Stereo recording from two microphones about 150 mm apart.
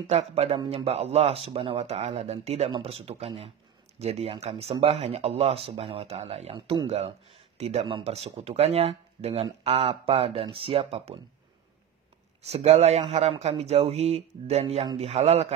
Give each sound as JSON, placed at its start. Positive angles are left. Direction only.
{"t": 0.0, "sound": "speech", "side_deg": -45}
{"t": 12.4, "sound": "speech", "side_deg": -45}